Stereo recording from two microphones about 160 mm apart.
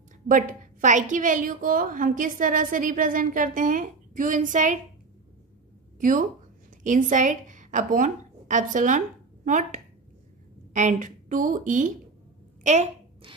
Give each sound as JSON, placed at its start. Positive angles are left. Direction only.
{"t": 0.3, "sound": "a woman's voice", "side_deg": -55}
{"t": 5.9, "sound": "a woman's voice", "side_deg": -55}